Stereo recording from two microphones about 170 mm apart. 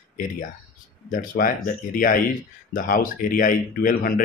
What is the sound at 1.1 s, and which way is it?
Speech, 55° left (ahead or behind).